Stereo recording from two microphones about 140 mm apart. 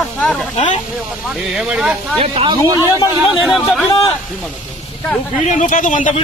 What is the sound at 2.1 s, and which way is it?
Speech, 45° right (ahead or behind).